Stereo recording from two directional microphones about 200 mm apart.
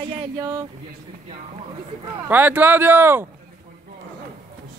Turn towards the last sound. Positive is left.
turn(degrees=-10)  # may be behind; listen again after turning